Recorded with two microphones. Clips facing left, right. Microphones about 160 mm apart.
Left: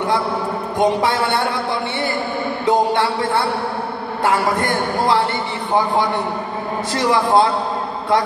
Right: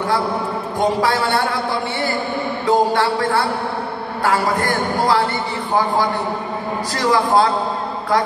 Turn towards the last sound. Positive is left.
turn(degrees=25)  # may be behind; listen again after turning